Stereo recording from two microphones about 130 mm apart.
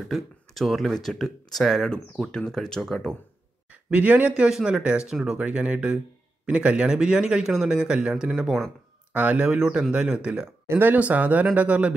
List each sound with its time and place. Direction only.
0.1 s speech: centre (ahead or behind)
3.9 s speech: 10° right (ahead or behind)